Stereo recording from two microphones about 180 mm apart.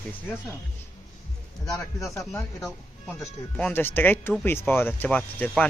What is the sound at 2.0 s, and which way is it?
Speech, 15° left (ahead or behind).